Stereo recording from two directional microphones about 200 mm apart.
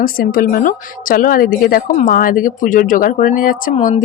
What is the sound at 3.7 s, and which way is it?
Frying, 30° left (ahead or behind).